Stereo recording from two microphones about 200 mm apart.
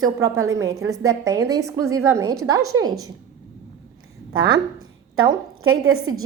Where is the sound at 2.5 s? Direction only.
90° right.